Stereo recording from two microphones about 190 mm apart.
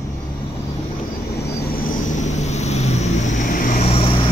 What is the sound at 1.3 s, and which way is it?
Vehicle, 60° left (ahead or behind).